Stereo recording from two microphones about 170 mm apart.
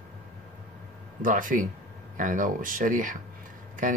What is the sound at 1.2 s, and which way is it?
Speech, 50° right (ahead or behind).